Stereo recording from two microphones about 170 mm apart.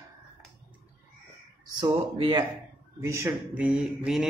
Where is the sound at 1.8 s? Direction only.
30° right (ahead or behind).